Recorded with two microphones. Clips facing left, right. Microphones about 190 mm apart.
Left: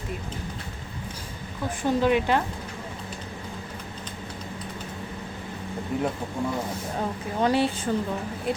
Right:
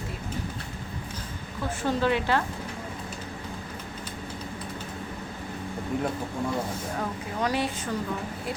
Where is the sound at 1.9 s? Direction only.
15° left (ahead or behind).